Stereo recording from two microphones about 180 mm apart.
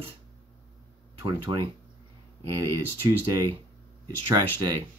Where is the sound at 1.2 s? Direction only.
20° right (ahead or behind).